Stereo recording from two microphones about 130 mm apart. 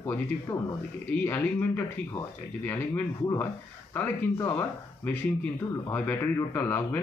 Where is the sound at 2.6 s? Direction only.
15° left (ahead or behind).